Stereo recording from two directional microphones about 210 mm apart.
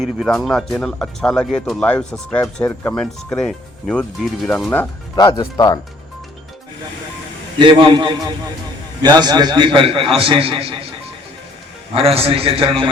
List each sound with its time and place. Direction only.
0.0 s speech: centre (ahead or behind)
5.1 s speech: 20° left (ahead or behind)
7.6 s a man's voice: 20° right (ahead or behind)
11.9 s a man's voice: 25° right (ahead or behind)